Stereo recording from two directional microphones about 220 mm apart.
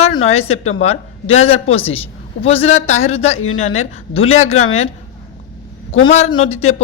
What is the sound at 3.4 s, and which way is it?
Speech, 70° left (ahead or behind).